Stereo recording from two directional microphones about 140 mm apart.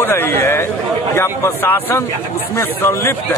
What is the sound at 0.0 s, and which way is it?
A man's voice, 15° left (ahead or behind).